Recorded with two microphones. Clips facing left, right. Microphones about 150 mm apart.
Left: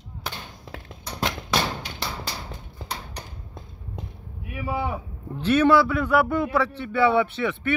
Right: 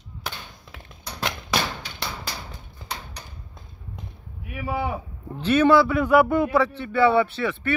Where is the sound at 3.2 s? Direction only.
25° left (ahead or behind).